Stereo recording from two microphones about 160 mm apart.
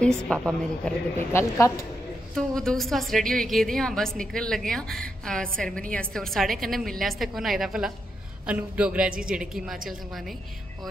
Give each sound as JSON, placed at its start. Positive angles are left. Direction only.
{"t": 0.3, "sound": "a woman's voice", "side_deg": 5}